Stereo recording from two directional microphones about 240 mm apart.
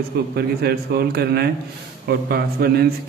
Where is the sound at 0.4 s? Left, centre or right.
Right.